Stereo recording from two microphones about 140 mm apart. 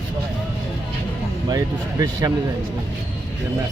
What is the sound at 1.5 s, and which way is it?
Speech, 25° right (ahead or behind).